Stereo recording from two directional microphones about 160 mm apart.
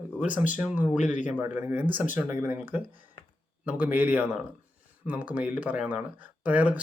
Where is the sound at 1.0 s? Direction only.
50° left (ahead or behind).